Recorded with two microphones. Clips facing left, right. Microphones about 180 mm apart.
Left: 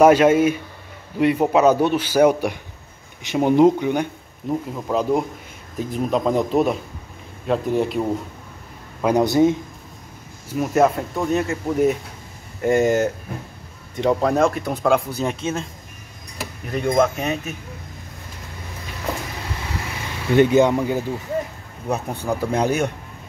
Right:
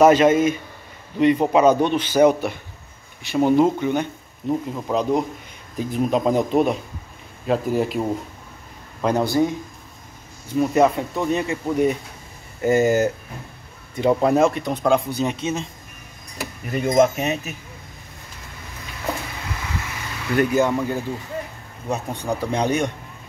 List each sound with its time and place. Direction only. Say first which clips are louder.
0.0 s a man's voice: left 1 dB; 10° left (ahead or behind)
4.5 s speech: right 1 dB; centre (ahead or behind)
9.0 s a man's voice: left 3 dB; 15° left (ahead or behind)
10.5 s speech: right 1 dB; centre (ahead or behind)
16.7 s speech: right 1 dB; 5° right (ahead or behind)
20.3 s a man's voice: left 4 dB; 25° left (ahead or behind)
22.2 s a man's voice: left 2 dB; 5° left (ahead or behind)